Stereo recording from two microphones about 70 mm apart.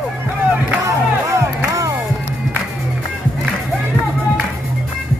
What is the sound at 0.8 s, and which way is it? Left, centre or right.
Music, right.